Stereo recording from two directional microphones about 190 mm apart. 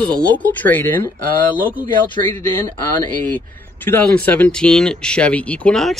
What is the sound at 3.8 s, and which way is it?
Speech, 10° left (ahead or behind).